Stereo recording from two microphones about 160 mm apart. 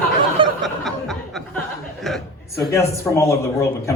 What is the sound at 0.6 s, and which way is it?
Chuckle, centre (ahead or behind).